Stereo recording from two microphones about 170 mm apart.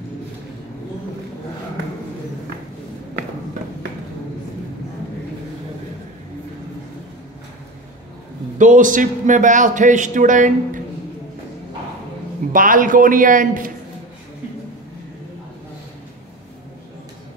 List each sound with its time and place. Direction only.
8.5 s a man's voice: 50° right (ahead or behind)
12.5 s a man's voice: 55° right (ahead or behind)